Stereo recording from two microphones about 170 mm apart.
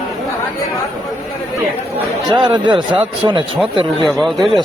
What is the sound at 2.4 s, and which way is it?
Speech, 25° right (ahead or behind).